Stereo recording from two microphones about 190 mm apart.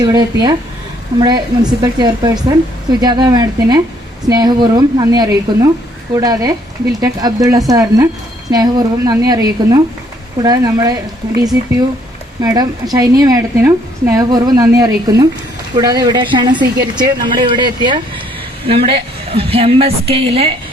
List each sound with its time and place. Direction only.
0.0 s a woman's voice: 20° right (ahead or behind)